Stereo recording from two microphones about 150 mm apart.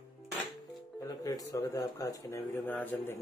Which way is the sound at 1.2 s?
20° left (ahead or behind).